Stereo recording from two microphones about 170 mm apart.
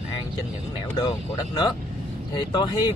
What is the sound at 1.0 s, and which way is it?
Speech, 25° left (ahead or behind).